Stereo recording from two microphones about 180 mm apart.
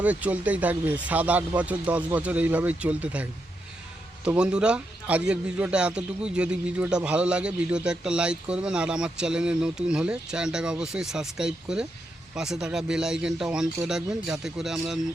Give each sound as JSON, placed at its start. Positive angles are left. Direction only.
{"t": 0.0, "sound": "a man's voice", "side_deg": -10}